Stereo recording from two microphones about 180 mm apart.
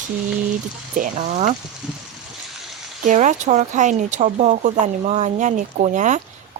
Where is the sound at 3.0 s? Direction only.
40° right (ahead or behind).